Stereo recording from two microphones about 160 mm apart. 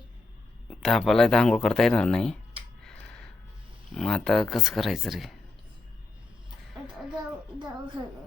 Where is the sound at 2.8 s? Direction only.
5° left (ahead or behind).